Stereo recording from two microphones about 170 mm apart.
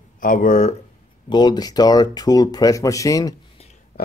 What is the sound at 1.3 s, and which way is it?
Speech, 25° left (ahead or behind).